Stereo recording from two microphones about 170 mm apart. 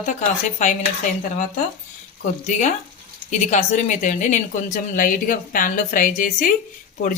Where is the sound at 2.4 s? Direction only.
45° left (ahead or behind).